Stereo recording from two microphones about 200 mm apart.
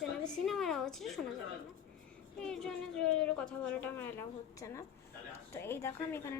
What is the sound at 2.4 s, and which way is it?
A woman's voice, 5° left (ahead or behind).